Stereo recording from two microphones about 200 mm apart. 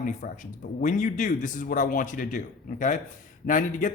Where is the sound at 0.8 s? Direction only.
40° left (ahead or behind).